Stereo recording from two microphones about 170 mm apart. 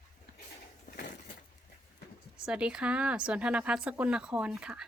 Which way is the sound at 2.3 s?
5° right (ahead or behind).